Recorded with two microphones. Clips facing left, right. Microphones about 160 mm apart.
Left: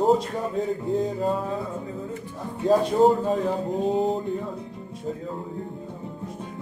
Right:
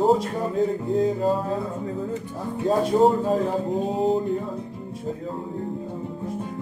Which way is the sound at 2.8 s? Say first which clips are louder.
Right 1 dB; centre (ahead or behind).